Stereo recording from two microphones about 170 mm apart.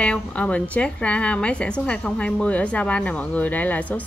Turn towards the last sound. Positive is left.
turn(degrees=10)  # may be behind; listen again after turning